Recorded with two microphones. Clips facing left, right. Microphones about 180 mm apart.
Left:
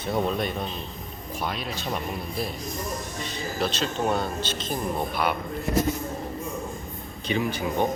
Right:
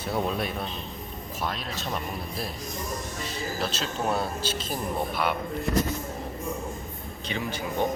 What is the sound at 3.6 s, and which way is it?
Speech, 5° right (ahead or behind).